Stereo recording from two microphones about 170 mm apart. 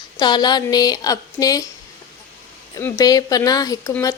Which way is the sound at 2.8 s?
20° left (ahead or behind).